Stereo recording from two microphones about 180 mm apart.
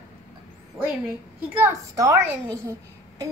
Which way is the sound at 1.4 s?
15° right (ahead or behind).